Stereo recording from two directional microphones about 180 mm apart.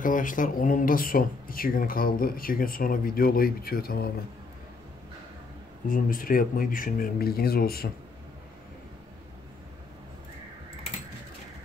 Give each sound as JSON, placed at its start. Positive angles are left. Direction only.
{"t": 0.0, "sound": "speech", "side_deg": 50}
{"t": 5.9, "sound": "speech", "side_deg": 50}